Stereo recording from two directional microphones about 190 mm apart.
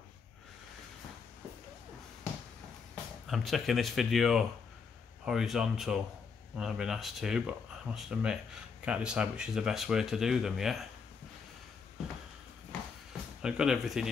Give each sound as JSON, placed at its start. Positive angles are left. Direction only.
{"t": 3.3, "sound": "speech", "side_deg": 0}
{"t": 13.4, "sound": "speech", "side_deg": -5}